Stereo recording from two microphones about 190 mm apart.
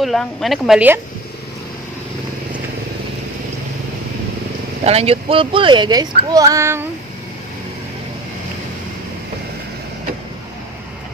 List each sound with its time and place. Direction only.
0.0 s a woman's voice: centre (ahead or behind)
4.8 s a child's voice: 30° right (ahead or behind); by 6.9 s 15° right (ahead or behind)